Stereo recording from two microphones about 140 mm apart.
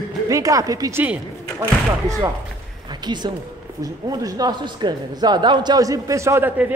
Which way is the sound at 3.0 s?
30° right (ahead or behind).